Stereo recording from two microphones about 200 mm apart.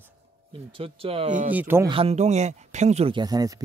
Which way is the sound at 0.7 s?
30° right (ahead or behind).